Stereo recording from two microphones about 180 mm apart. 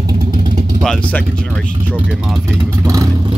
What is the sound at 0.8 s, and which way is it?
Speech, 5° left (ahead or behind).